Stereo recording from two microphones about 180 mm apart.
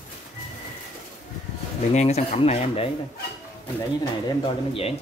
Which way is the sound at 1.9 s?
40° left (ahead or behind).